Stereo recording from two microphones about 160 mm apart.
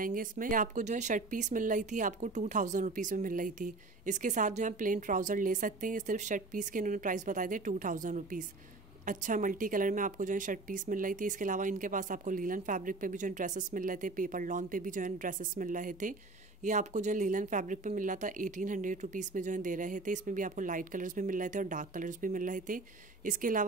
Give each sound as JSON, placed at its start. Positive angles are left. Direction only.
{"t": 0.0, "sound": "a woman's voice", "side_deg": -60}